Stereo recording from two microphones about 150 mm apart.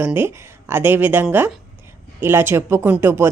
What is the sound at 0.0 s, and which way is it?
Speech, 10° right (ahead or behind).